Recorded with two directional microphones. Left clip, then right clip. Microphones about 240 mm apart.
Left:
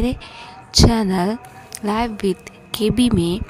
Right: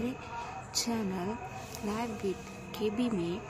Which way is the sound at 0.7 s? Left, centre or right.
Left.